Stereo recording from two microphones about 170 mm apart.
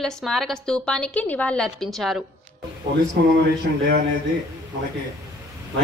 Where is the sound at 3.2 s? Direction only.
75° right (ahead or behind).